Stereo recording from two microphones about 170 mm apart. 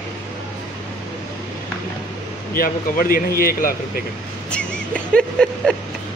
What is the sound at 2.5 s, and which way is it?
Speech, 60° left (ahead or behind).